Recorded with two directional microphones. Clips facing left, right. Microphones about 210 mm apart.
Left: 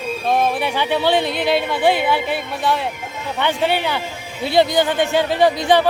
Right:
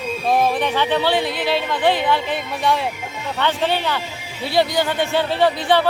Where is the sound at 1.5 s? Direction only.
10° left (ahead or behind).